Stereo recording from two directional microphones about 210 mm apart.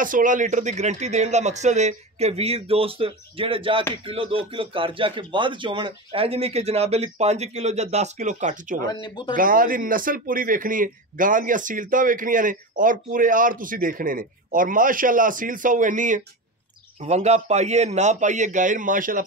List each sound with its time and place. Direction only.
0.0 s a man's voice: 40° right (ahead or behind)
9.0 s speech: 20° left (ahead or behind)
9.3 s a man's voice: 40° right (ahead or behind)